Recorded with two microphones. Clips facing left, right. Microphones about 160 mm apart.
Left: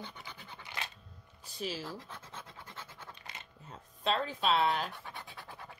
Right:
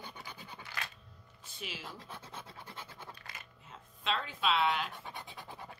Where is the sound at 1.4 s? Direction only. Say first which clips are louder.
Left 7 dB; 35° left (ahead or behind).